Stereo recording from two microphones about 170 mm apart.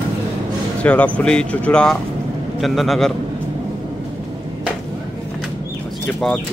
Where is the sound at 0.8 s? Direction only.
10° left (ahead or behind).